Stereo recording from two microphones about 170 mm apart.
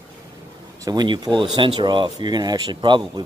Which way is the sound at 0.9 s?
25° right (ahead or behind).